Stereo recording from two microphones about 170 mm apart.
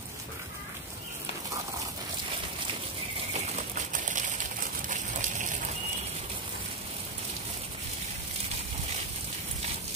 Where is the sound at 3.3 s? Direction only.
45° right (ahead or behind).